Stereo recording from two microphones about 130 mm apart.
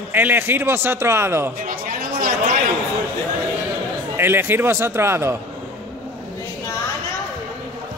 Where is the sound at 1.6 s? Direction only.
90° right.